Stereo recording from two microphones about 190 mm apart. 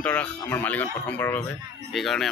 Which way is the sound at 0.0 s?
5° left (ahead or behind).